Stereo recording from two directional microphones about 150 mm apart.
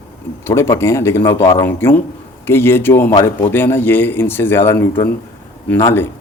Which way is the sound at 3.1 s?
25° left (ahead or behind).